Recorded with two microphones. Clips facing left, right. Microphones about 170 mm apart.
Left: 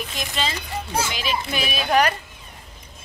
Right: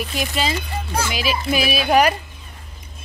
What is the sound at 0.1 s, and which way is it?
Speech, 10° right (ahead or behind).